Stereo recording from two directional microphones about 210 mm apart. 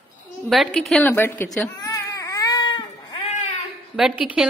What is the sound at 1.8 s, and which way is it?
Baby cry, 15° left (ahead or behind).